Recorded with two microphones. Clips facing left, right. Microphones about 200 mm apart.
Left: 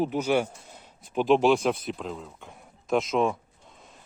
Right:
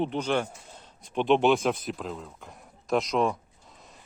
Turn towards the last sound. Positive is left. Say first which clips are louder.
# left 1 dB
turn(degrees=0)  # may be behind; listen again after turning